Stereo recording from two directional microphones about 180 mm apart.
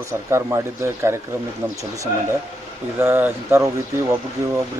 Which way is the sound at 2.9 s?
10° right (ahead or behind).